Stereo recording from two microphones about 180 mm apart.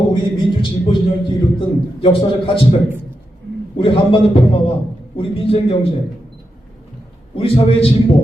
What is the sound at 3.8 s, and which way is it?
A man's voice, 30° left (ahead or behind).